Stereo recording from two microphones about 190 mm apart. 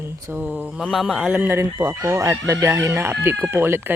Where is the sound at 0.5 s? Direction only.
5° right (ahead or behind).